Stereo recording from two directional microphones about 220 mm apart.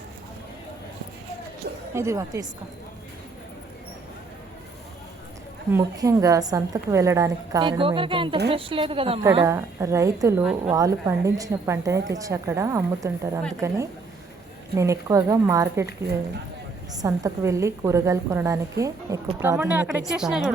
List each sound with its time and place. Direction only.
1.9 s a woman's voice: 15° right (ahead or behind)
5.7 s a woman's voice: 15° right (ahead or behind)
9.3 s a woman's voice: 15° right (ahead or behind)
14.8 s a woman's voice: 15° right (ahead or behind)
16.9 s a woman's voice: 15° right (ahead or behind)